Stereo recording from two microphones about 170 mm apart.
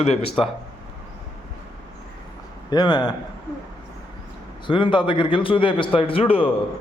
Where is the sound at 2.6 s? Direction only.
25° left (ahead or behind).